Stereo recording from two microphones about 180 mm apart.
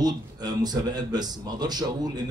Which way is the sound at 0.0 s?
20° right (ahead or behind).